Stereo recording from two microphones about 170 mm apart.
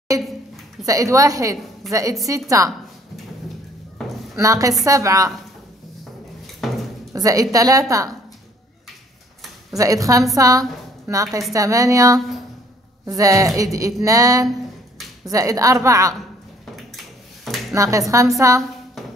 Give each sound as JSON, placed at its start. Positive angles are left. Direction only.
{"t": 0.1, "sound": "a woman's voice", "side_deg": -20}
{"t": 4.0, "sound": "a sound", "side_deg": 0}
{"t": 4.4, "sound": "a woman's voice", "side_deg": -20}
{"t": 6.4, "sound": "a sound", "side_deg": 0}
{"t": 7.1, "sound": "speech", "side_deg": -20}
{"t": 9.8, "sound": "a woman's voice", "side_deg": -20}
{"t": 17.7, "sound": "a woman's voice", "side_deg": -20}